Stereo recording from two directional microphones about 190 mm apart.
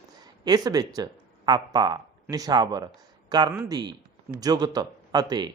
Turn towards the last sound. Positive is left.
turn(degrees=-20)  # may be behind; listen again after turning